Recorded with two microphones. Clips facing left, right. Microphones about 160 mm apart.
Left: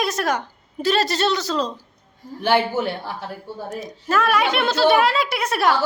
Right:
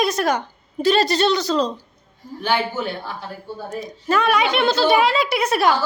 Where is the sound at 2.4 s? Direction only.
75° left (ahead or behind).